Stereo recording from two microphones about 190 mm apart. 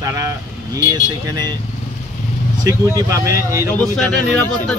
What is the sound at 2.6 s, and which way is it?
Speech, 20° right (ahead or behind).